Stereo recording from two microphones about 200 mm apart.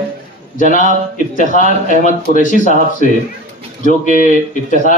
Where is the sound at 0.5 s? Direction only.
40° left (ahead or behind).